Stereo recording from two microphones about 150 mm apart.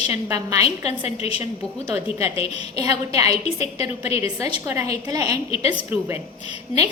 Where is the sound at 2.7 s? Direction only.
25° right (ahead or behind).